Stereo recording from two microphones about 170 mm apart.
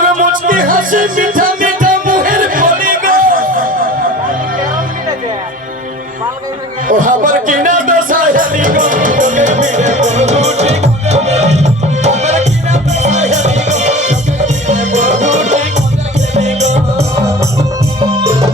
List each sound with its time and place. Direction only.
0.0 s music: 50° right (ahead or behind)
6.8 s music: 50° right (ahead or behind)